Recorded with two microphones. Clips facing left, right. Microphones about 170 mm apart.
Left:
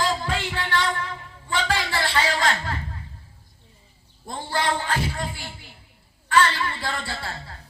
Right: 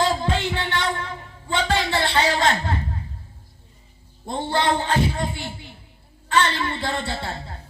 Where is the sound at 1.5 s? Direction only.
25° right (ahead or behind).